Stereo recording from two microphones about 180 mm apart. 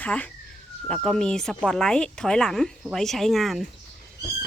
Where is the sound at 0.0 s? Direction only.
10° left (ahead or behind).